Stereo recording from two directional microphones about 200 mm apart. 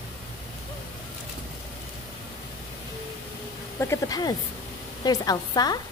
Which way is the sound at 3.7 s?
15° left (ahead or behind).